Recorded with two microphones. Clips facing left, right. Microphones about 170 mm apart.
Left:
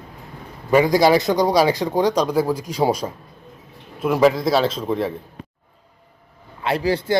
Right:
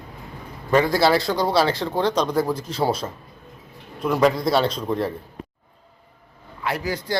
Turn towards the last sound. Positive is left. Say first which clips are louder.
# left 6 dB
turn(degrees=30)  # may be behind; listen again after turning